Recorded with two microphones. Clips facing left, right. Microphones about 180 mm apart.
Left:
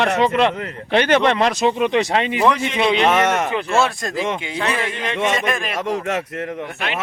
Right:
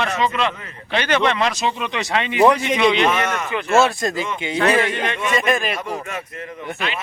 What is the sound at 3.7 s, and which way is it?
Speech, centre (ahead or behind).